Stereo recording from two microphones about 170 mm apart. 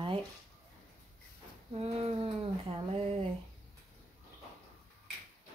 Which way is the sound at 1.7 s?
35° right (ahead or behind).